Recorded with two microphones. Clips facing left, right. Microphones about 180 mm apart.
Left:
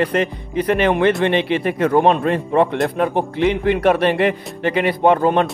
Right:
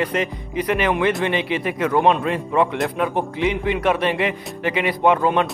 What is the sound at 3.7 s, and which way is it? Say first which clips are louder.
Speech: left 4 dB; 50° left (ahead or behind).